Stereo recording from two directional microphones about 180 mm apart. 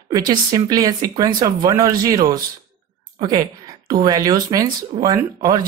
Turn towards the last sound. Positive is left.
turn(degrees=-20)  # may be behind; listen again after turning